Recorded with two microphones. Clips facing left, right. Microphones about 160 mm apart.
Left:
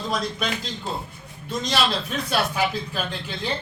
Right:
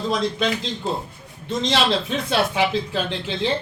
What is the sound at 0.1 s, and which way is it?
A man's voice, 25° right (ahead or behind).